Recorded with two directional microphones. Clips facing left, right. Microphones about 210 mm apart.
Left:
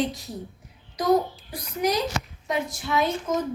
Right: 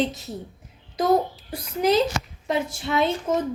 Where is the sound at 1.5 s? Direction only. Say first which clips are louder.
Right 4 dB; 25° right (ahead or behind).